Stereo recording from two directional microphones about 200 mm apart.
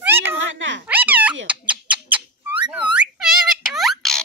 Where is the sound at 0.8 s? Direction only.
10° right (ahead or behind).